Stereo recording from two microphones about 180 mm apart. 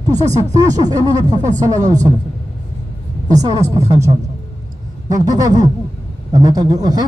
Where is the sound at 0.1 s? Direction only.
40° right (ahead or behind).